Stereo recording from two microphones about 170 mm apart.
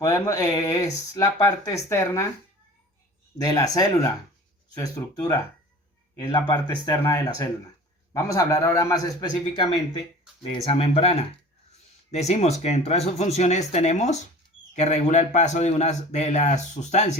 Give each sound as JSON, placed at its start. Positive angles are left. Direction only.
{"t": 0.0, "sound": "speech", "side_deg": 20}
{"t": 3.4, "sound": "a man's voice", "side_deg": 20}